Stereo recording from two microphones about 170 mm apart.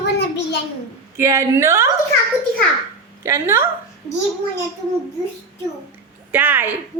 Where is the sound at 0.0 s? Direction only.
85° left.